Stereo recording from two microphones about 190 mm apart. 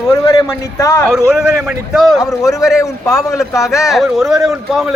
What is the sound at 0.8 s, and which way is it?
Speech, 15° left (ahead or behind).